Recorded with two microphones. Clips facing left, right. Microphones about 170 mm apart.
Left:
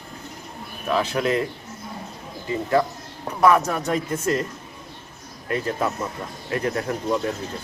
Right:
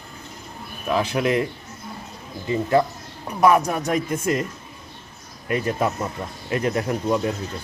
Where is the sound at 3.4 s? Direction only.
15° right (ahead or behind).